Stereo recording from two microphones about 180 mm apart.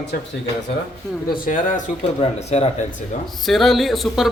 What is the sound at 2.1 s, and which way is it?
Speech, 35° left (ahead or behind).